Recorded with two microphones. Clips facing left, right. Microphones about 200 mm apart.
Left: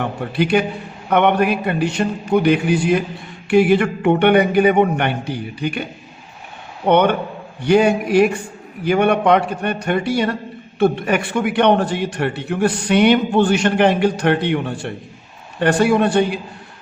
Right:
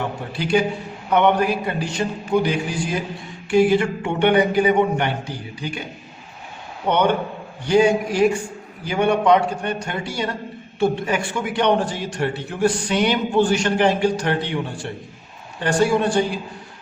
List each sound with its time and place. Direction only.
0.3 s a man's voice: 60° left (ahead or behind)
6.8 s a man's voice: 60° left (ahead or behind)